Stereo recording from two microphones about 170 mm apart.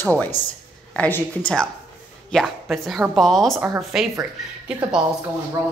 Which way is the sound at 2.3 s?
Centre (ahead or behind).